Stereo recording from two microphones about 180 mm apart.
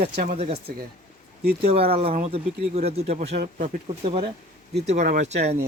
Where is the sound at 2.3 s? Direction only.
35° right (ahead or behind).